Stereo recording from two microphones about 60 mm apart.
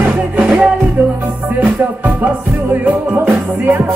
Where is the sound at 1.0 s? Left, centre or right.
Right.